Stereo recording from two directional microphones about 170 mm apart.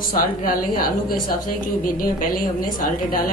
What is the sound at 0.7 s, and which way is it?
A woman's voice, 60° left (ahead or behind).